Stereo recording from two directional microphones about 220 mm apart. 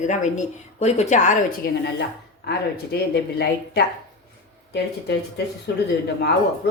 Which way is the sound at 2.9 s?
50° left (ahead or behind).